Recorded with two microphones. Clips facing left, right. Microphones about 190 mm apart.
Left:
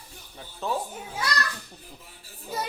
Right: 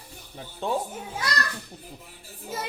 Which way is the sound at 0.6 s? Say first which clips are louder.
Right 2 dB; 30° right (ahead or behind).